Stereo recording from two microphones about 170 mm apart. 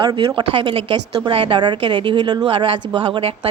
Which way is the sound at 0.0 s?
25° right (ahead or behind).